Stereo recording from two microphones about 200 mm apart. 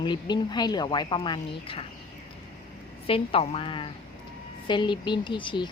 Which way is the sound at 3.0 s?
25° left (ahead or behind).